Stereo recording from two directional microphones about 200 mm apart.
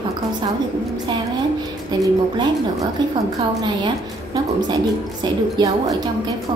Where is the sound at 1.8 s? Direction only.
20° right (ahead or behind).